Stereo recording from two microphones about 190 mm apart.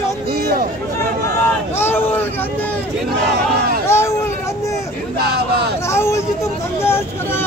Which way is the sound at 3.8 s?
15° left (ahead or behind).